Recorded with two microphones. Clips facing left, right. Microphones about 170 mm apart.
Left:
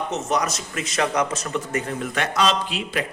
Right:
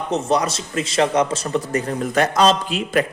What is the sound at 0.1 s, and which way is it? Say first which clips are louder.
A man's voice: right 8 dB; 30° right (ahead or behind).